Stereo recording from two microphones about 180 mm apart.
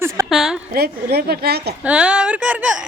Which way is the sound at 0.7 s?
60° right (ahead or behind).